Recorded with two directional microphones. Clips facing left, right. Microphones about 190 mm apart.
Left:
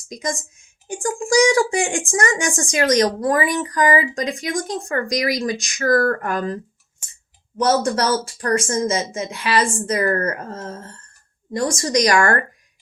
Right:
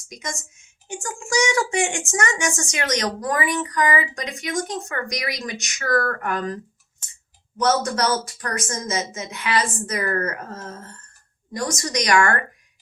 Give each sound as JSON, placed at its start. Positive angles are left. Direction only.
{"t": 0.1, "sound": "speech", "side_deg": 35}
{"t": 7.0, "sound": "clicking", "side_deg": 10}
{"t": 7.6, "sound": "speech", "side_deg": 30}